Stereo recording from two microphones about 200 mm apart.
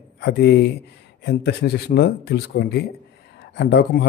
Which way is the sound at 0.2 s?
55° left (ahead or behind).